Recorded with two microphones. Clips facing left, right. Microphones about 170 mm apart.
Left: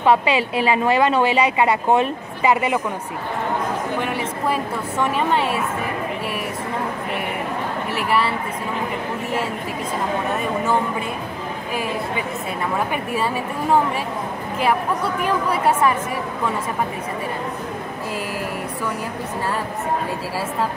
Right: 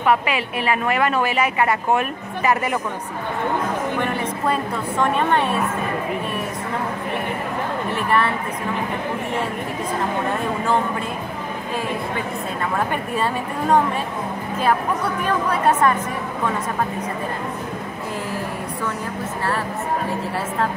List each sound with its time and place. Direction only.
0.0 s a woman's voice: 30° left (ahead or behind)
4.1 s a woman's voice: 5° left (ahead or behind)
7.9 s a woman's voice: 10° left (ahead or behind)
12.9 s a woman's voice: 5° left (ahead or behind)
15.2 s a woman's voice: 10° left (ahead or behind)